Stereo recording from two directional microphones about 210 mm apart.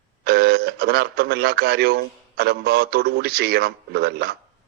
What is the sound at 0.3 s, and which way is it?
A man's voice, 50° right (ahead or behind).